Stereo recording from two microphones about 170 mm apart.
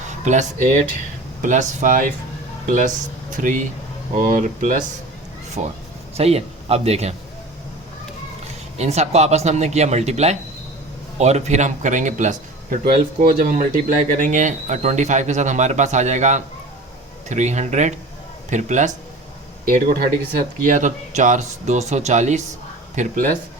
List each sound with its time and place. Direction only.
0.1 s a man's voice: 45° right (ahead or behind)
8.8 s speech: 40° right (ahead or behind)
19.6 s speech: 60° right (ahead or behind)
20.7 s speech: 50° right (ahead or behind)